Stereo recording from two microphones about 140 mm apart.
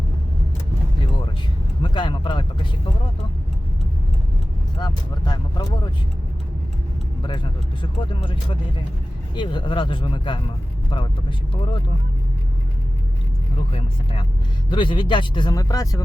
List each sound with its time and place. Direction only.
1.8 s speech: 35° left (ahead or behind)
4.8 s speech: 30° left (ahead or behind)
7.2 s speech: 35° left (ahead or behind)
13.7 s speech: 40° left (ahead or behind); by 16.0 s 25° left (ahead or behind)